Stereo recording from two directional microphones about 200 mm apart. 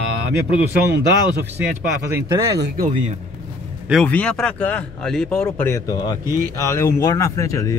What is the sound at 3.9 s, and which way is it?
Speech, 5° left (ahead or behind).